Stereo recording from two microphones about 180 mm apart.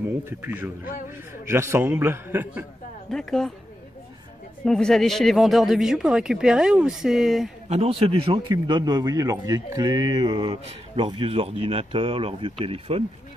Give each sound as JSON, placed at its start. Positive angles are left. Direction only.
{"t": 0.2, "sound": "a man's voice", "side_deg": -10}
{"t": 3.1, "sound": "speech", "side_deg": 5}
{"t": 4.6, "sound": "speech", "side_deg": 5}
{"t": 7.6, "sound": "a man's voice", "side_deg": -35}